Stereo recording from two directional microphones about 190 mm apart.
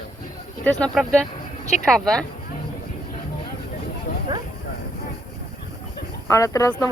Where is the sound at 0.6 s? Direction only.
5° left (ahead or behind).